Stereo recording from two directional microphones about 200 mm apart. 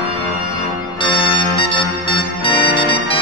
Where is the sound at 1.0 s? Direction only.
25° left (ahead or behind).